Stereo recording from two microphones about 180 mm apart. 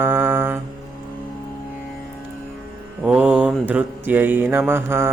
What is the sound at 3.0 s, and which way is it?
Mantra, 5° right (ahead or behind).